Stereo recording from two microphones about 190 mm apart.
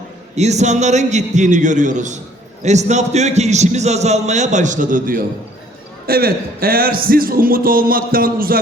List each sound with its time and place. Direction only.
0.3 s a man's voice: 35° right (ahead or behind)